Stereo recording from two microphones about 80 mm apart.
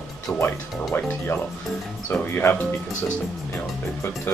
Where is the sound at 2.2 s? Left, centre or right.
Left.